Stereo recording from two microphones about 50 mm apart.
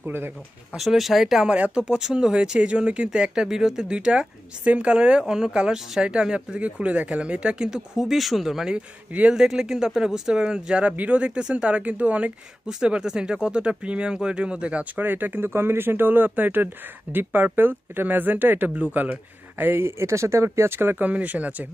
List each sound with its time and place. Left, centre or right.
0.0 s speech: right
0.7 s speech: centre
1.5 s a woman's voice: right
8.7 s a woman's voice: right
9.3 s a woman's voice: centre; by 12.3 s right
12.6 s a woman's voice: centre
15.0 s speech: right
20.0 s speech: right
21.1 s a woman's voice: right